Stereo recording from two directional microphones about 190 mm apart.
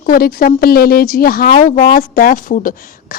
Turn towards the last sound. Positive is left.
turn(degrees=45)  # may be behind; listen again after turning